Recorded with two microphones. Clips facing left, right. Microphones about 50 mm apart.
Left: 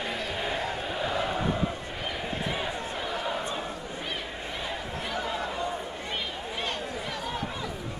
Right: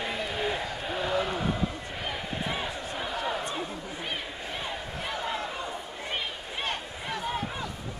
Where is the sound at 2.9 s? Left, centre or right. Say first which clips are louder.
Right 2 dB; centre.